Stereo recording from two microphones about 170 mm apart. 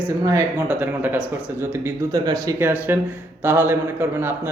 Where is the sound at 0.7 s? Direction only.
10° right (ahead or behind).